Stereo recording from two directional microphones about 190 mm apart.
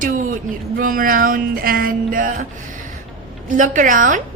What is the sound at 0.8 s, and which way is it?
A woman's voice, 45° right (ahead or behind).